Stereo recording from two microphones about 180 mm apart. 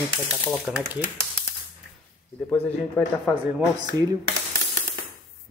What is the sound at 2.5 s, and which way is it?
Speech, 5° left (ahead or behind).